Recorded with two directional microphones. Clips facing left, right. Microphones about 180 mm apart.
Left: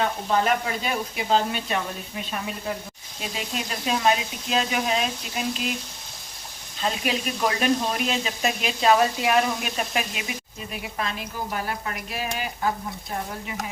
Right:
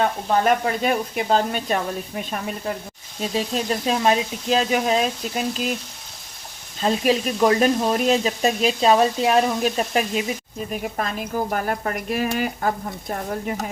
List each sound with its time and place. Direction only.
0.4 s speech: 50° right (ahead or behind)
6.8 s speech: 40° right (ahead or behind)